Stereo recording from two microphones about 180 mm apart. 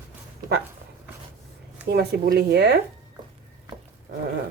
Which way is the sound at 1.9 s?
60° right (ahead or behind).